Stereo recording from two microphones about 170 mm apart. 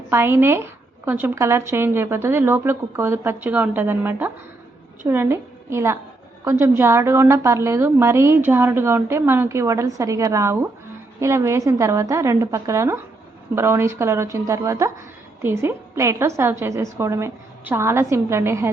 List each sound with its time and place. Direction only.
0.1 s a woman's voice: 15° right (ahead or behind)